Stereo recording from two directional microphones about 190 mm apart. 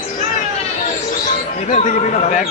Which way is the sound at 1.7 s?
40° left (ahead or behind).